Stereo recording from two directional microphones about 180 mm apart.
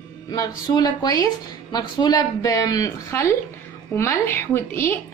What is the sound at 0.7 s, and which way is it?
A woman's voice, 20° left (ahead or behind).